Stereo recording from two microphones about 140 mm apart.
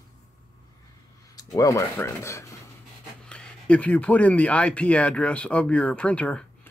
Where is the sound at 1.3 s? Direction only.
25° left (ahead or behind).